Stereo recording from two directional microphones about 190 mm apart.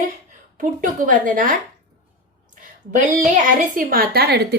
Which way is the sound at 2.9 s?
45° right (ahead or behind).